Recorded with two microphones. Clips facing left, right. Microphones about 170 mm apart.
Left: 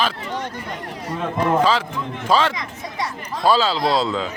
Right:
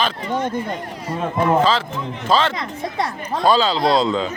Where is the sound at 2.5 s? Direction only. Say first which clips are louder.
Right 5 dB; 60° right (ahead or behind).